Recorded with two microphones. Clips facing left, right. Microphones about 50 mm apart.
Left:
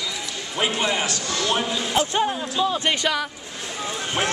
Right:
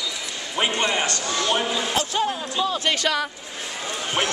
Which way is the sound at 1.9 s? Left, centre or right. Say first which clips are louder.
Left 5 dB; centre.